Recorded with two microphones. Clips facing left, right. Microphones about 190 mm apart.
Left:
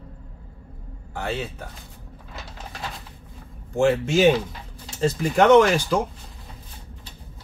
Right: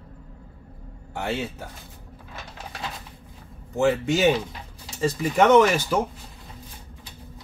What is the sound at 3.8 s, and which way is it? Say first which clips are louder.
Speech: left 2 dB; centre (ahead or behind).